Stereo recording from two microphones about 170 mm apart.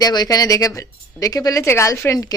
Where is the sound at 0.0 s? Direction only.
25° left (ahead or behind).